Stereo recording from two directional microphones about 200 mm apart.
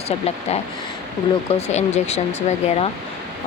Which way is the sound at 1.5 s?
35° left (ahead or behind).